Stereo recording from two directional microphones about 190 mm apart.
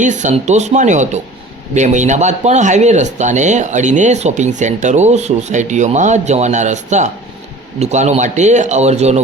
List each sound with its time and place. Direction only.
0.0 s speech: 40° right (ahead or behind)